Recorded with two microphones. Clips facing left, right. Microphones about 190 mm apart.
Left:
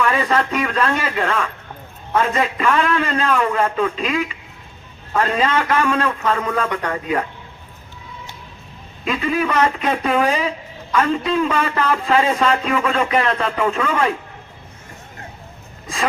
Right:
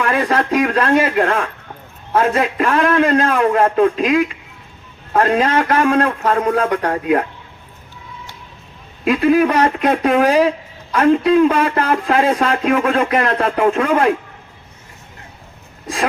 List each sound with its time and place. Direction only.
0.1 s a man's voice: 50° right (ahead or behind)
9.0 s a man's voice: 55° right (ahead or behind)